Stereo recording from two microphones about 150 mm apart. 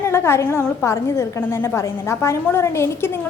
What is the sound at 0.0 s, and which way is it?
A woman's voice, 15° left (ahead or behind).